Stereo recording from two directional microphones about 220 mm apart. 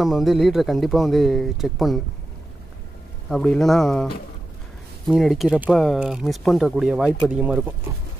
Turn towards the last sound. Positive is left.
turn(degrees=-5)  # may be behind; listen again after turning